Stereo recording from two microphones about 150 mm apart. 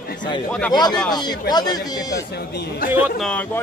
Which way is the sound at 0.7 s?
30° left (ahead or behind).